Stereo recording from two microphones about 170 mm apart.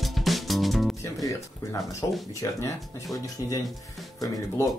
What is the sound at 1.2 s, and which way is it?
Music, 15° left (ahead or behind).